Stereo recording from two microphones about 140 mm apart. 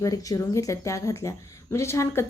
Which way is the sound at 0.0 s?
25° left (ahead or behind).